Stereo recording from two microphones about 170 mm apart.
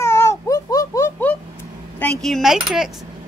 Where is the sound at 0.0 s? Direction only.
15° left (ahead or behind).